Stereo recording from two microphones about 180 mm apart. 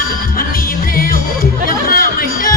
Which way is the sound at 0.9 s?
50° left (ahead or behind).